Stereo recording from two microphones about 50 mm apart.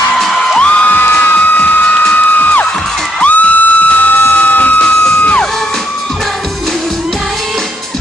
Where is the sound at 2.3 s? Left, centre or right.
Left.